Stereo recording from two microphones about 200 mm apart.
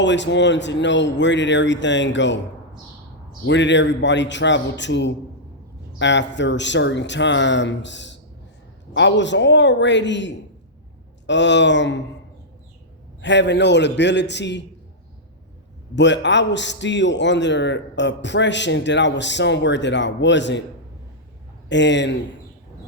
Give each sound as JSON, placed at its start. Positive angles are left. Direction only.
{"t": 0.0, "sound": "a man's voice", "side_deg": 65}
{"t": 3.4, "sound": "a man's voice", "side_deg": 65}
{"t": 13.2, "sound": "a man's voice", "side_deg": 60}
{"t": 16.0, "sound": "a man's voice", "side_deg": 60}
{"t": 21.7, "sound": "a man's voice", "side_deg": 60}